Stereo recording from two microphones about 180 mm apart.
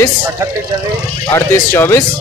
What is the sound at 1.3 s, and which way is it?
Speech, 15° left (ahead or behind).